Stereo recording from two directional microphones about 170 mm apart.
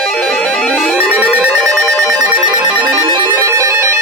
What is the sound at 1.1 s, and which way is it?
Ringtone, 15° right (ahead or behind).